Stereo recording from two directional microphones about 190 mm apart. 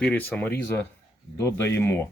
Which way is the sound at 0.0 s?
10° left (ahead or behind).